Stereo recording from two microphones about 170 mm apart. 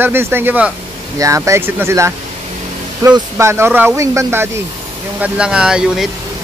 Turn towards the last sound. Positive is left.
turn(degrees=-5)  # may be behind; listen again after turning